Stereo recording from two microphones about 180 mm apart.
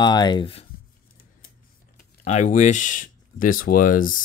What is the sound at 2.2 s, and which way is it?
Speech, 40° left (ahead or behind).